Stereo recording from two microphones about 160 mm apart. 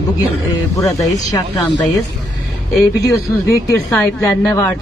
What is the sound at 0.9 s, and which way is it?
Speech, 20° left (ahead or behind).